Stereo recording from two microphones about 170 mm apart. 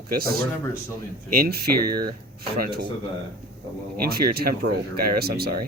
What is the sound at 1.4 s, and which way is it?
Speech, 65° right (ahead or behind).